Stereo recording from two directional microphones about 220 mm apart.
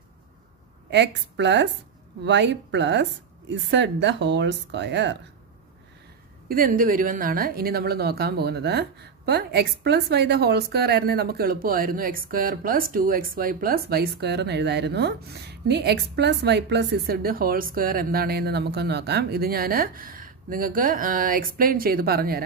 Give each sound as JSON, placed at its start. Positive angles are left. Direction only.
{"t": 0.8, "sound": "a woman's voice", "side_deg": -50}
{"t": 6.5, "sound": "a woman's voice", "side_deg": -40}